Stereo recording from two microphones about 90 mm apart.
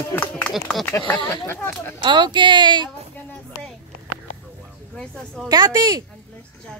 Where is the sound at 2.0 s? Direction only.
60° right (ahead or behind).